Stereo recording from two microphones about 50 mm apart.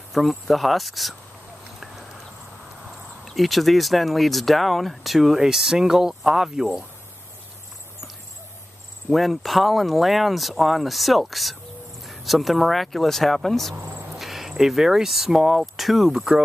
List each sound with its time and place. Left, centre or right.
0.1 s speech: centre
3.3 s speech: centre
9.1 s speech: centre
13.7 s cricket: right
14.1 s speech: centre